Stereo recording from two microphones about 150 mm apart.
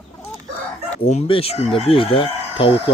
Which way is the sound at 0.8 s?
45° left (ahead or behind).